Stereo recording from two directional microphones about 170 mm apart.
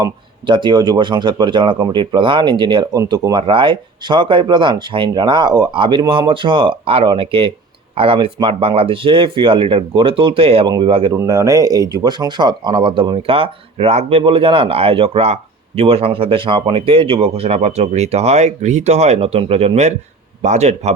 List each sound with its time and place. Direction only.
0.0 s speech: 25° right (ahead or behind)
11.1 s speech: 20° right (ahead or behind); by 20.9 s 40° right (ahead or behind)